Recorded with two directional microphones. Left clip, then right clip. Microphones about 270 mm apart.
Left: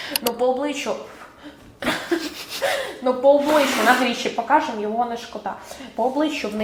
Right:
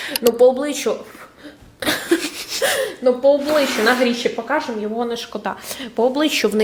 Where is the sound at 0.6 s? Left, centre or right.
Right.